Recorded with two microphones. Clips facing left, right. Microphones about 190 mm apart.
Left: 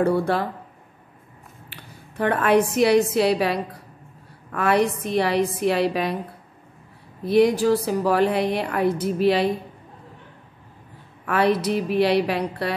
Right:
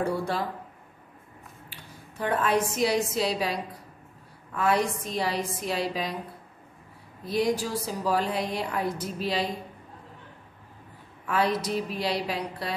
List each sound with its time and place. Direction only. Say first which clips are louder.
0.0 s a woman's voice: left 7 dB; 60° left (ahead or behind)
1.7 s a woman's voice: left 2 dB; 65° left (ahead or behind)
7.2 s a woman's voice: left 9 dB; 65° left (ahead or behind)
11.2 s a woman's voice: left 6 dB; 65° left (ahead or behind)